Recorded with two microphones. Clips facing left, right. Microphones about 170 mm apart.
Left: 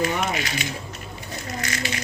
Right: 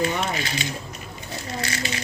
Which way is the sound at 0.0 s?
30° right (ahead or behind).